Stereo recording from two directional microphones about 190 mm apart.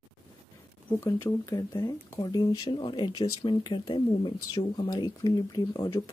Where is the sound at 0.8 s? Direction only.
15° left (ahead or behind).